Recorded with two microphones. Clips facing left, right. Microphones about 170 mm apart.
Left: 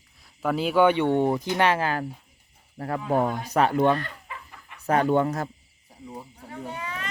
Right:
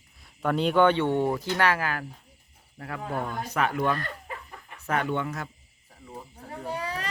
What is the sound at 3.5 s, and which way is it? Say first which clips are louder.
A man's voice: left 5 dB; 30° left (ahead or behind).